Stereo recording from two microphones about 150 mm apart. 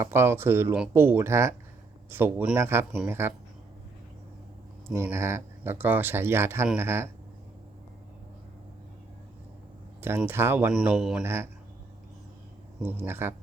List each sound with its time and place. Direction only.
0.0 s speech: 15° right (ahead or behind)
4.9 s speech: 20° right (ahead or behind)
10.0 s speech: 15° right (ahead or behind)
10.8 s speech: 5° right (ahead or behind)
11.2 s speech: 15° right (ahead or behind)
12.8 s speech: 15° right (ahead or behind)